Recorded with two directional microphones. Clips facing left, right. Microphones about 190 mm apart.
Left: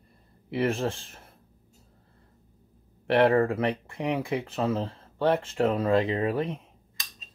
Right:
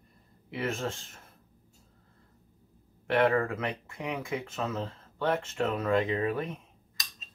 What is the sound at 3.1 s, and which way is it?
Speech, 30° left (ahead or behind).